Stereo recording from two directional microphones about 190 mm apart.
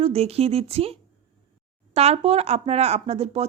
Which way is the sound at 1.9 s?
35° right (ahead or behind).